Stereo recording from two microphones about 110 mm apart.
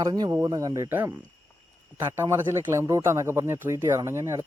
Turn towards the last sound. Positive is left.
turn(degrees=-25)  # may be behind; listen again after turning